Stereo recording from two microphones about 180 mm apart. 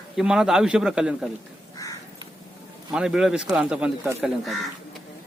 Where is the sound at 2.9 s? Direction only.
5° right (ahead or behind).